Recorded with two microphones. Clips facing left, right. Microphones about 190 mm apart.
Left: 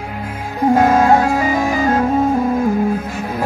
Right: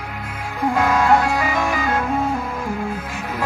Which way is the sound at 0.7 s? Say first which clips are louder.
Left 4 dB; 40° left (ahead or behind).